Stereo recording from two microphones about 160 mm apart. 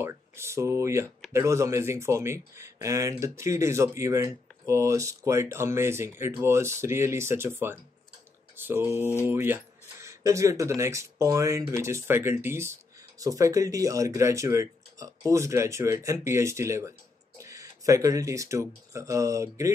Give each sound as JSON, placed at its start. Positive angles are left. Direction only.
{"t": 0.0, "sound": "speech", "side_deg": -15}